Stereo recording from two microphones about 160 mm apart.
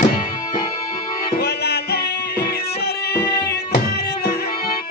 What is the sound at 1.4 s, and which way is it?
Music, 90° left.